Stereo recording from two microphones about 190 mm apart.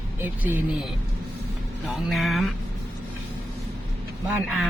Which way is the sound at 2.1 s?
Centre (ahead or behind).